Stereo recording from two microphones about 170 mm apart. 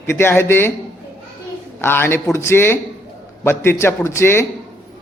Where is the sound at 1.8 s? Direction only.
15° left (ahead or behind).